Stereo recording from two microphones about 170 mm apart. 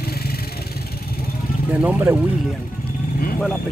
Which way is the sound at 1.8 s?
10° right (ahead or behind).